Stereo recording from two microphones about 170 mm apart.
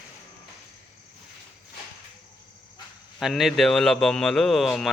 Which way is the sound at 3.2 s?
Centre (ahead or behind).